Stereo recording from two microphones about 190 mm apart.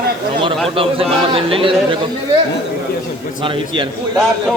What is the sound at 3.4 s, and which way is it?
Speech, 25° right (ahead or behind).